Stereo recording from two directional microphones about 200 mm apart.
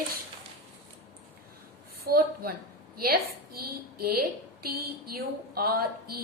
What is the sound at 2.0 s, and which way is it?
A woman's voice, 50° right (ahead or behind).